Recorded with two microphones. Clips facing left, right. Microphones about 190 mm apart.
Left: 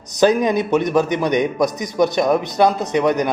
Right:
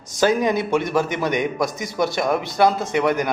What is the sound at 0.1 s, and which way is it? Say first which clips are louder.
A man's voice: left 3 dB; 20° left (ahead or behind).